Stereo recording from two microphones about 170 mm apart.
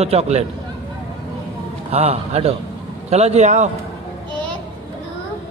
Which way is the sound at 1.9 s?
35° right (ahead or behind).